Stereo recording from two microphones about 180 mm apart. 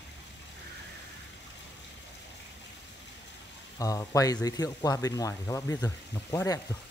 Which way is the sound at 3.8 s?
15° left (ahead or behind).